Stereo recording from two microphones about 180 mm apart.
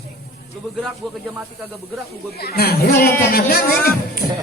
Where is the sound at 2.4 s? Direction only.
60° left (ahead or behind).